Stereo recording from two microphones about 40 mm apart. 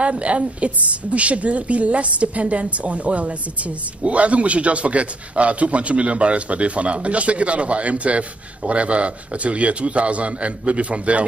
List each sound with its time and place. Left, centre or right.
0.0 s a woman's voice: right